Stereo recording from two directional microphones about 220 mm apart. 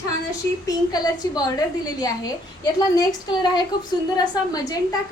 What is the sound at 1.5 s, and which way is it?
Speech, 15° left (ahead or behind).